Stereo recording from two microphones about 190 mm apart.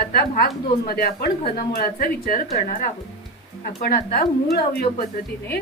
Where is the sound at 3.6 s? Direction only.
50° left (ahead or behind).